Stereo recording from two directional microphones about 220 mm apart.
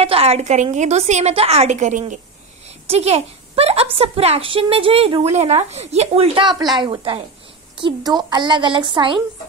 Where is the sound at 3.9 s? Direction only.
25° right (ahead or behind).